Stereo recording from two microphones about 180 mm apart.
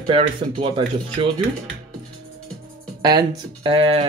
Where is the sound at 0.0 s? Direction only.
30° right (ahead or behind).